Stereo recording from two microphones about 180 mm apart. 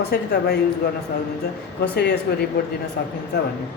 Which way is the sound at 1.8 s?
65° left (ahead or behind).